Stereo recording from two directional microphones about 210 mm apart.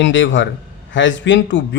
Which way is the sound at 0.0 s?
60° left (ahead or behind).